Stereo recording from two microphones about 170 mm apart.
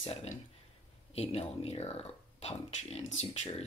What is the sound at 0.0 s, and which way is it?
Speech, 35° left (ahead or behind).